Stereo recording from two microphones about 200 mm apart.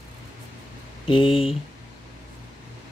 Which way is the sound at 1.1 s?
25° left (ahead or behind).